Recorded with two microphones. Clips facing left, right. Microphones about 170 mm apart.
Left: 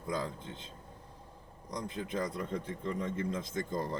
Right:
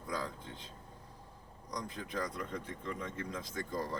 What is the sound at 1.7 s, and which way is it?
Speech, 25° left (ahead or behind).